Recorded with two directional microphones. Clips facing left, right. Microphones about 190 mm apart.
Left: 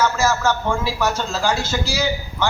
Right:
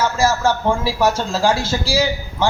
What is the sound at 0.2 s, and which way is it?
A man's voice, 30° right (ahead or behind).